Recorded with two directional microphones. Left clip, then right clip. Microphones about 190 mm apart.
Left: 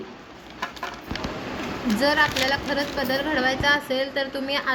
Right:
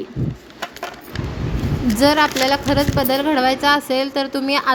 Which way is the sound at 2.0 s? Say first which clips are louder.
Right 6 dB; 65° right (ahead or behind).